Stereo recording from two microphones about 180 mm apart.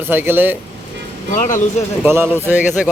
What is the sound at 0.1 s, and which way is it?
Speech, 10° right (ahead or behind).